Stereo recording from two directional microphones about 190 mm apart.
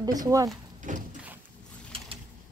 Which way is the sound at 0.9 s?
40° right (ahead or behind).